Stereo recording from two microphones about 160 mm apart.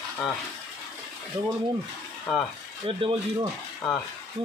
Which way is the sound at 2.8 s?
30° right (ahead or behind).